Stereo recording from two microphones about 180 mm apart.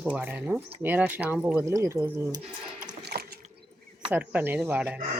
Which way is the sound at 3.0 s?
60° right (ahead or behind).